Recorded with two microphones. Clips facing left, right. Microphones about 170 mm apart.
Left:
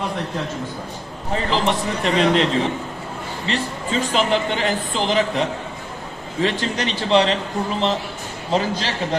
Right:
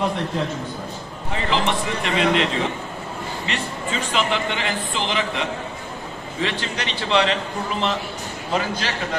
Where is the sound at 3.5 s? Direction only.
40° left (ahead or behind).